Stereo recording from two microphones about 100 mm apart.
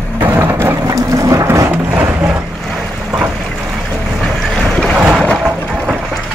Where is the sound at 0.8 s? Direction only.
35° right (ahead or behind).